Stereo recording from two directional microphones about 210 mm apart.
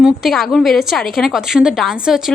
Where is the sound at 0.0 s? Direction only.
Centre (ahead or behind).